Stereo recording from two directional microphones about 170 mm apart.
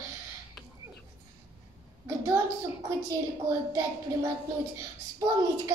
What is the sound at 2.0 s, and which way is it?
Speech, 15° right (ahead or behind).